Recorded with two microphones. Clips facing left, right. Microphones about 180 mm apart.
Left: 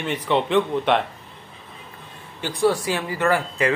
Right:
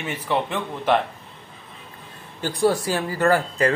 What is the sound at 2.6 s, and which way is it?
Speech, 40° right (ahead or behind).